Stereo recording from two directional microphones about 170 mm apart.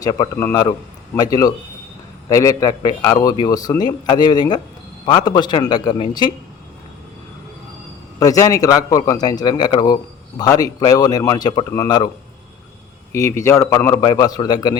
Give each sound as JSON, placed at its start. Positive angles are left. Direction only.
{"t": 0.0, "sound": "a man's voice", "side_deg": 20}
{"t": 8.2, "sound": "a man's voice", "side_deg": 20}
{"t": 13.1, "sound": "a man's voice", "side_deg": 15}